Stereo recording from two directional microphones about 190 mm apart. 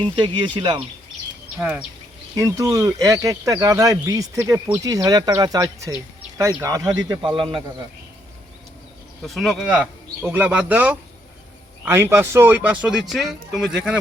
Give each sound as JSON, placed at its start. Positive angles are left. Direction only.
{"t": 0.0, "sound": "speech", "side_deg": -25}
{"t": 1.5, "sound": "speech", "side_deg": -10}
{"t": 9.2, "sound": "speech", "side_deg": 0}